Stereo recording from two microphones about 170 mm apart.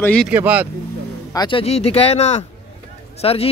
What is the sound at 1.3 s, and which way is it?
Speech, 25° left (ahead or behind).